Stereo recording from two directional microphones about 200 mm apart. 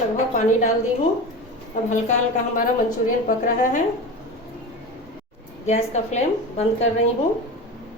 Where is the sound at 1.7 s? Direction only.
40° left (ahead or behind).